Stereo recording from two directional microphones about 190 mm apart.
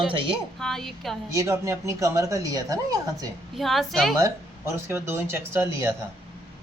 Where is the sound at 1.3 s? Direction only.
15° right (ahead or behind).